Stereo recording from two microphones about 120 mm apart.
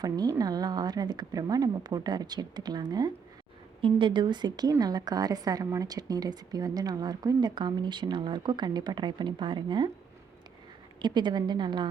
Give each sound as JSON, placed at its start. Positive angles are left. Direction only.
{"t": 0.0, "sound": "a woman's voice", "side_deg": -30}
{"t": 3.8, "sound": "a woman's voice", "side_deg": -45}
{"t": 11.0, "sound": "a woman's voice", "side_deg": -40}